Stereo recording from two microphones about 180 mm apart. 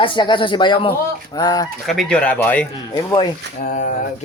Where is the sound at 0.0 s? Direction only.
25° left (ahead or behind).